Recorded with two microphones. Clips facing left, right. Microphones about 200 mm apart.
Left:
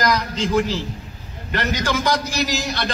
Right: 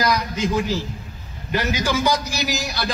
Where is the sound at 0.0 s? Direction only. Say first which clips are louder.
Even; 10° right (ahead or behind).